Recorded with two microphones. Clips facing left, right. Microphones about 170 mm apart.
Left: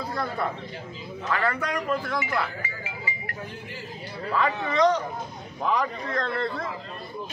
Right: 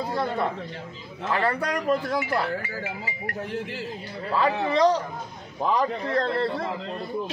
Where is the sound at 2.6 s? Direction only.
60° right (ahead or behind).